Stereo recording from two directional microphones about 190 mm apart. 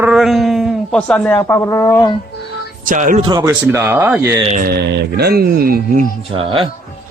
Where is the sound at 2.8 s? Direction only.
45° right (ahead or behind).